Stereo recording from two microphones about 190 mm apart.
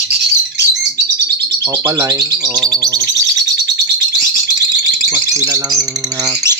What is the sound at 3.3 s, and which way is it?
Bird, 60° right (ahead or behind).